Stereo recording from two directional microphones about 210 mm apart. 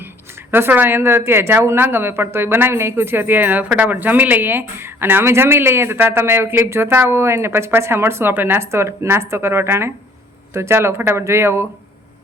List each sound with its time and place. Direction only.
0.5 s speech: 10° right (ahead or behind)